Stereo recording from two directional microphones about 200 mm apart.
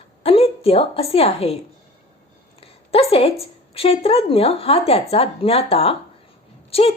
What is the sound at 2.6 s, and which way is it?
A woman's voice, 30° left (ahead or behind).